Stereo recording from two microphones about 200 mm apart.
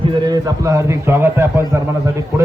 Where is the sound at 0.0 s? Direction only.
20° right (ahead or behind).